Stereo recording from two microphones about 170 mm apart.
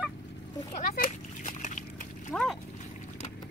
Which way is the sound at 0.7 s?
50° left (ahead or behind).